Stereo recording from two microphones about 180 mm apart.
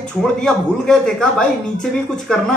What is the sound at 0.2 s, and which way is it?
Speech, 5° left (ahead or behind).